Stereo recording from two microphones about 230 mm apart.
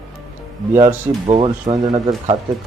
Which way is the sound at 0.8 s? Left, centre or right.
Right.